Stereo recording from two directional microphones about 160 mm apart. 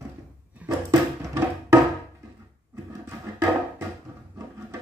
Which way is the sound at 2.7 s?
15° right (ahead or behind).